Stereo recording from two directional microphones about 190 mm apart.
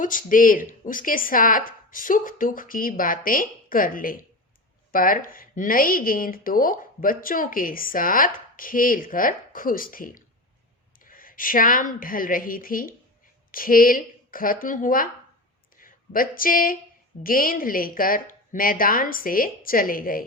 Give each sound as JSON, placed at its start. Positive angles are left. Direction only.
{"t": 0.0, "sound": "a woman's voice", "side_deg": 45}